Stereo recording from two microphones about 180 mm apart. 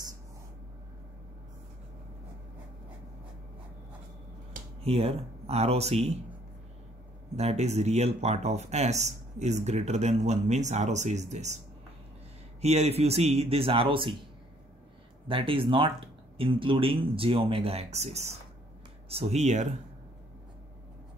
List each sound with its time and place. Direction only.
4.8 s speech: 35° right (ahead or behind)
7.3 s speech: 35° right (ahead or behind)
12.6 s speech: 35° right (ahead or behind)
15.2 s speech: 30° right (ahead or behind)